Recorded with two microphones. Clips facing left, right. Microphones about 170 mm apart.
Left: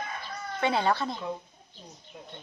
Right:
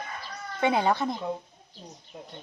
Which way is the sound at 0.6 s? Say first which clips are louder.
Right 2 dB; 15° right (ahead or behind).